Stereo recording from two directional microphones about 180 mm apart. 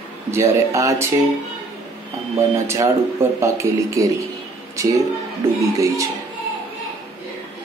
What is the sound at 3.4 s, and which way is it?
Speech, 15° right (ahead or behind).